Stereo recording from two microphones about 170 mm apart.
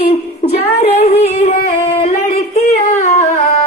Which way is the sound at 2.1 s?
60° left (ahead or behind).